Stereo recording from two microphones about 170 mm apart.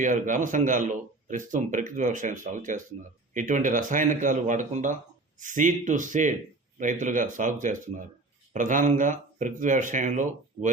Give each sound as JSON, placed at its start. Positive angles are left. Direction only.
{"t": 0.0, "sound": "speech", "side_deg": -50}